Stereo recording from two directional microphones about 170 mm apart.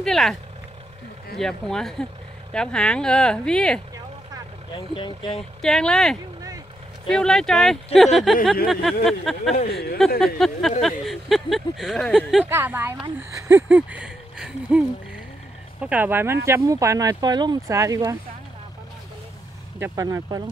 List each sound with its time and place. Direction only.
0.0 s speech: centre (ahead or behind)
4.7 s speech: 30° left (ahead or behind)
5.6 s speech: 5° left (ahead or behind)
9.7 s speech: 70° left (ahead or behind)
9.9 s speech: centre (ahead or behind)
12.4 s speech: 15° right (ahead or behind)
19.8 s speech: 20° right (ahead or behind)